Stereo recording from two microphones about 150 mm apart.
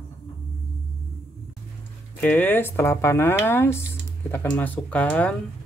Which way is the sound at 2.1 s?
10° left (ahead or behind).